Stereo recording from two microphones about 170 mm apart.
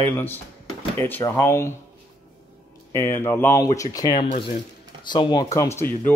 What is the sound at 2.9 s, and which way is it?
Speech, 15° left (ahead or behind).